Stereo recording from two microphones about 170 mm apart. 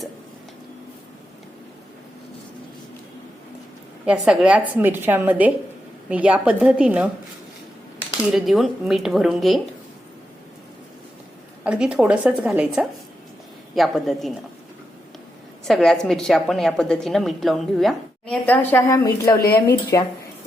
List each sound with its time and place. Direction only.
4.0 s a woman's voice: 5° right (ahead or behind)
8.3 s a woman's voice: centre (ahead or behind)
11.6 s a woman's voice: 5° right (ahead or behind)
15.6 s a woman's voice: centre (ahead or behind); by 20.1 s 20° left (ahead or behind)